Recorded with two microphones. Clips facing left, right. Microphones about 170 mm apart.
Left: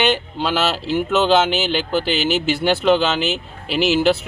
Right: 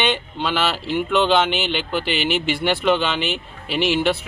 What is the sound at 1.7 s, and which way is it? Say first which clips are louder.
Speech: left 3 dB; 35° left (ahead or behind).